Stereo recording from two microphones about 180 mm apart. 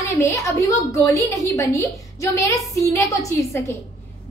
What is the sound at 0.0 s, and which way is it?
A child's voice, 15° left (ahead or behind).